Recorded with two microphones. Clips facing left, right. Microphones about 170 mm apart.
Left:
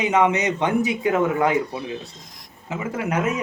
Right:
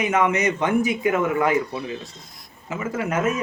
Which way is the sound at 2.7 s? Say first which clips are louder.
Even; 20° left (ahead or behind).